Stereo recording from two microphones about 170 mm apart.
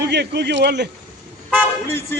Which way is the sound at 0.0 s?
75° right (ahead or behind).